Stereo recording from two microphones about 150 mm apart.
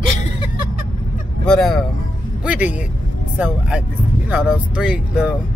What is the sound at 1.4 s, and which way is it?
Speech, centre (ahead or behind).